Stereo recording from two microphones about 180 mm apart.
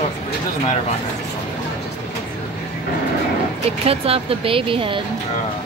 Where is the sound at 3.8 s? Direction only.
35° right (ahead or behind).